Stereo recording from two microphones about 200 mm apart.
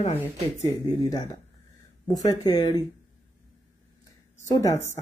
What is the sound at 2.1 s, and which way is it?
Speech, 15° left (ahead or behind).